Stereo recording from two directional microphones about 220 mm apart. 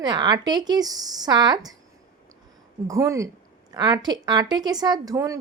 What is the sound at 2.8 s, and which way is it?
A woman's voice, 15° right (ahead or behind).